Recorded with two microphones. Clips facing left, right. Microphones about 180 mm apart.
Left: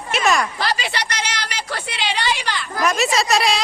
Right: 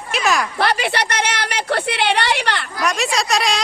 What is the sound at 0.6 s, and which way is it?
A woman's voice, 60° right (ahead or behind).